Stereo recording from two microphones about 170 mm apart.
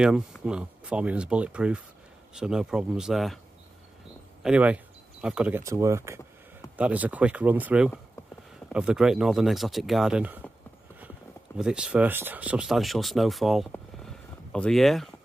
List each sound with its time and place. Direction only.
0.0 s speech: 5° right (ahead or behind)
4.4 s speech: 5° right (ahead or behind)
5.6 s speech: 15° right (ahead or behind)
11.5 s speech: 5° right (ahead or behind)
13.7 s a sound: centre (ahead or behind)